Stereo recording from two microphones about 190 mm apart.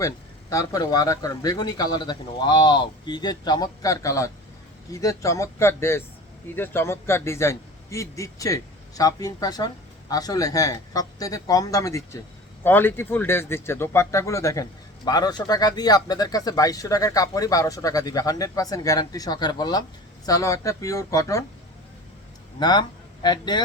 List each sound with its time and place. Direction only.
0.5 s a man's voice: 20° left (ahead or behind)
22.6 s a man's voice: 20° left (ahead or behind)